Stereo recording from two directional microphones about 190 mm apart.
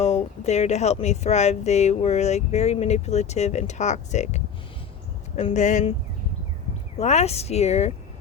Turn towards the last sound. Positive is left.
turn(degrees=35)  # may be behind; listen again after turning